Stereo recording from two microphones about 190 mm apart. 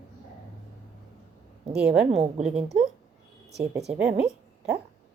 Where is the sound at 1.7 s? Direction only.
5° right (ahead or behind).